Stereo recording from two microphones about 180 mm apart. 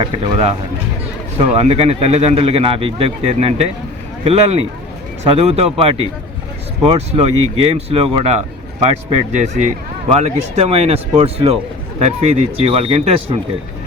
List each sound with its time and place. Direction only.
0.0 s speech: 30° right (ahead or behind)